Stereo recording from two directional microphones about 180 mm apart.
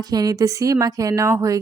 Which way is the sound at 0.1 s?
20° right (ahead or behind).